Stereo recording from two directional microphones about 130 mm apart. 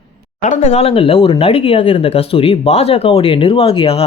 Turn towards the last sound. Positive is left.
turn(degrees=45)  # may be behind; listen again after turning